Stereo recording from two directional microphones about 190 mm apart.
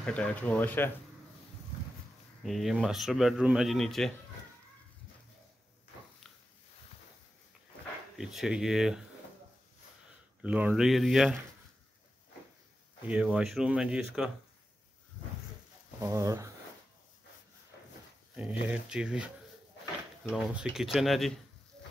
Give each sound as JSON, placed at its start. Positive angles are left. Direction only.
{"t": 0.0, "sound": "speech", "side_deg": 5}
{"t": 2.4, "sound": "a man's voice", "side_deg": 0}
{"t": 8.2, "sound": "a man's voice", "side_deg": 0}
{"t": 10.4, "sound": "a man's voice", "side_deg": -5}
{"t": 13.1, "sound": "a man's voice", "side_deg": -5}
{"t": 16.0, "sound": "speech", "side_deg": -15}
{"t": 18.3, "sound": "a man's voice", "side_deg": -5}